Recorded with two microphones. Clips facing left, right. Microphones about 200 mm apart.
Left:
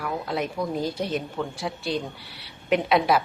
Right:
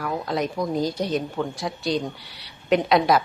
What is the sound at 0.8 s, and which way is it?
Speech, 35° right (ahead or behind).